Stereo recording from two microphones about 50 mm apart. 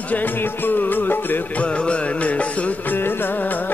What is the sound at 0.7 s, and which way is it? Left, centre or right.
Music, left.